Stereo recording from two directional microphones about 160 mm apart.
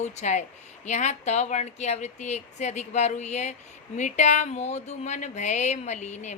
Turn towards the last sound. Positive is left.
turn(degrees=45)  # may be behind; listen again after turning